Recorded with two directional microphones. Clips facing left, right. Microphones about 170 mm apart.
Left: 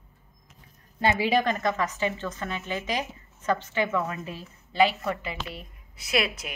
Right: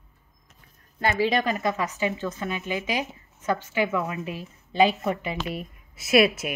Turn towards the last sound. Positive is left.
turn(degrees=-20)  # may be behind; listen again after turning